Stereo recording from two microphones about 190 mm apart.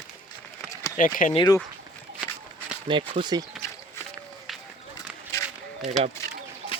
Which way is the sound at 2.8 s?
25° right (ahead or behind).